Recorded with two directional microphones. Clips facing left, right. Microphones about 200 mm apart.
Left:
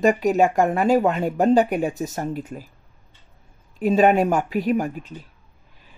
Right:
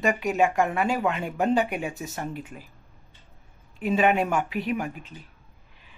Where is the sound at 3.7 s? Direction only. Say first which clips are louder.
Left 6 dB; 40° left (ahead or behind).